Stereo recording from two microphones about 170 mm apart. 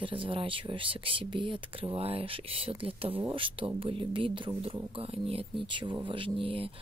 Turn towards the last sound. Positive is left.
turn(degrees=-30)  # may be behind; listen again after turning